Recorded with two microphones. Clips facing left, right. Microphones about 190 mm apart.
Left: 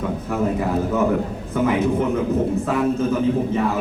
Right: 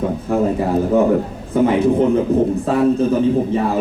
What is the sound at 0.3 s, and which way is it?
A man's voice, 30° right (ahead or behind).